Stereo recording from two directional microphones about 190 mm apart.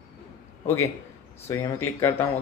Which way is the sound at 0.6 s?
15° left (ahead or behind).